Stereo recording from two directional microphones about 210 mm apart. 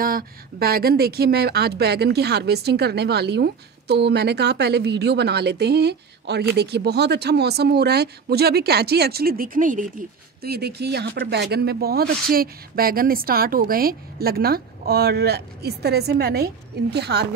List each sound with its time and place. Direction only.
0.0 s speech: 45° right (ahead or behind)